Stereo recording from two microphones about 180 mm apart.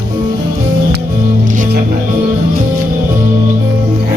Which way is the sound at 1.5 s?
50° right (ahead or behind).